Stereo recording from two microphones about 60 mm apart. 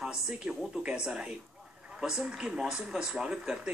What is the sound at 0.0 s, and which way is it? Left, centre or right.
A woman's voice, centre.